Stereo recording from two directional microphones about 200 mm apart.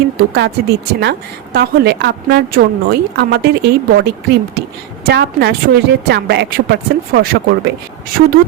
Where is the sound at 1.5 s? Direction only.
55° right (ahead or behind).